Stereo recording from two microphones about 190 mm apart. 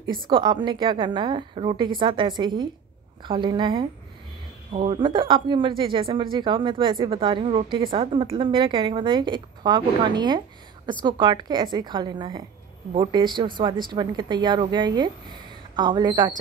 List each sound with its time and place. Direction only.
0.0 s a woman's voice: 25° right (ahead or behind)